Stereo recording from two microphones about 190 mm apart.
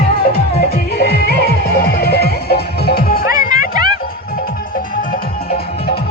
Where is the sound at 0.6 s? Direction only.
55° left (ahead or behind).